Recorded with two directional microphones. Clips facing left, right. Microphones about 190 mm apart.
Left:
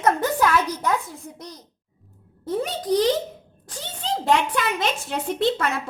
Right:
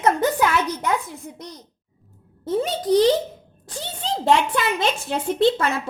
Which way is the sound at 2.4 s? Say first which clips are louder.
Right 3 dB; 25° right (ahead or behind).